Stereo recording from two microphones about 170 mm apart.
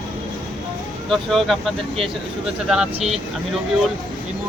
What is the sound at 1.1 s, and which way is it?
Speech, centre (ahead or behind).